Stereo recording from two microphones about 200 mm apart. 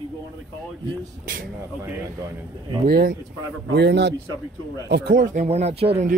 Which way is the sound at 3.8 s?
60° right (ahead or behind).